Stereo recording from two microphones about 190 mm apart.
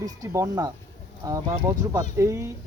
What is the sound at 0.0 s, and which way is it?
Speech, 20° right (ahead or behind).